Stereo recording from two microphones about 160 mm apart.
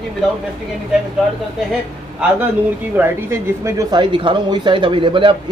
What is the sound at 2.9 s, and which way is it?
Speech, 15° right (ahead or behind).